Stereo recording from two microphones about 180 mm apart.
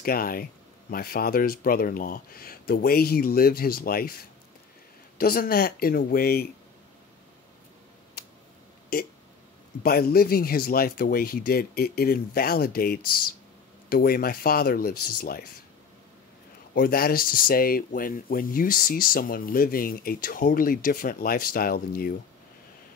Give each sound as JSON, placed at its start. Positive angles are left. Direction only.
{"t": 0.0, "sound": "speech", "side_deg": 55}
{"t": 9.8, "sound": "speech", "side_deg": 60}
{"t": 16.7, "sound": "speech", "side_deg": 55}